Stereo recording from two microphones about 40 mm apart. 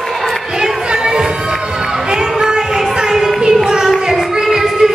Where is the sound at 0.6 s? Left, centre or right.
Centre.